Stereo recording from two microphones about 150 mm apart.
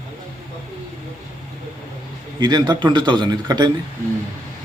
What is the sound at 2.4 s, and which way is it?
A man's voice, 30° right (ahead or behind).